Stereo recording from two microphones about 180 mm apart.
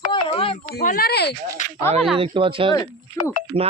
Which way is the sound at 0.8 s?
50° left (ahead or behind).